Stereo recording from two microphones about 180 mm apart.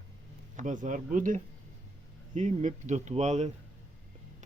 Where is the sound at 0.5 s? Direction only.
45° right (ahead or behind).